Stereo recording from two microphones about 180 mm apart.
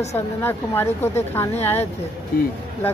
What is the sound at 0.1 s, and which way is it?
A woman's voice, 10° left (ahead or behind).